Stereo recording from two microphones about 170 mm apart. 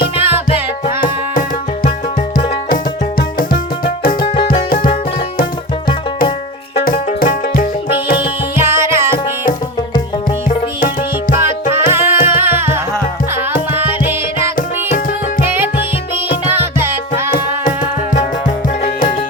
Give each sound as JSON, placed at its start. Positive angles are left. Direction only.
{"t": 0.2, "sound": "music", "side_deg": -10}
{"t": 1.0, "sound": "music", "side_deg": 50}
{"t": 3.2, "sound": "music", "side_deg": 60}
{"t": 6.8, "sound": "music", "side_deg": 55}
{"t": 8.2, "sound": "music", "side_deg": -15}
{"t": 11.3, "sound": "music", "side_deg": 50}
{"t": 11.9, "sound": "music", "side_deg": -15}
{"t": 16.5, "sound": "music", "side_deg": -15}
{"t": 17.3, "sound": "music", "side_deg": 50}